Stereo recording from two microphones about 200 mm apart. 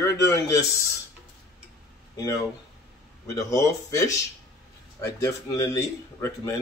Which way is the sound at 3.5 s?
15° left (ahead or behind).